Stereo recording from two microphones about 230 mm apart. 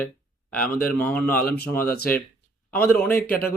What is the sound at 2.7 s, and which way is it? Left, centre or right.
Speech, centre.